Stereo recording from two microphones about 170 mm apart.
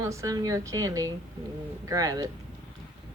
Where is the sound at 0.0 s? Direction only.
15° right (ahead or behind).